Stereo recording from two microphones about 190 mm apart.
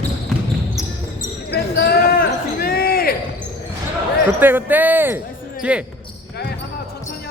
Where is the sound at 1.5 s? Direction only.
55° left (ahead or behind).